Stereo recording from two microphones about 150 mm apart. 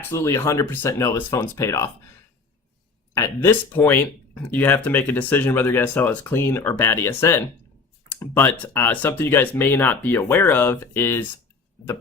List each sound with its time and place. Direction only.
0.1 s speech: 15° left (ahead or behind)
3.2 s speech: 15° left (ahead or behind)